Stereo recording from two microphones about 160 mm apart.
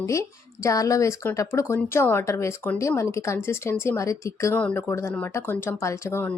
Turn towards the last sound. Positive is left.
turn(degrees=15)  # may be behind; listen again after turning